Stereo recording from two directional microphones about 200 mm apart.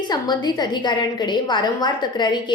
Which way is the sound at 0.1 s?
20° left (ahead or behind).